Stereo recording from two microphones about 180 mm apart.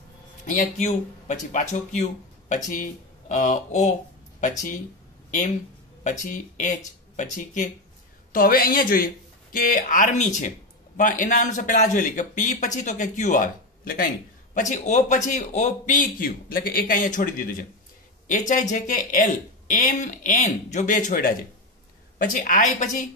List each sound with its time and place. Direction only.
0.5 s a man's voice: 45° left (ahead or behind)
6.0 s a man's voice: 45° left (ahead or behind)